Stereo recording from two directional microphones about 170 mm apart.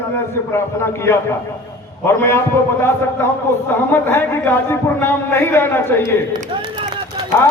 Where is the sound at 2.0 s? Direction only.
15° left (ahead or behind).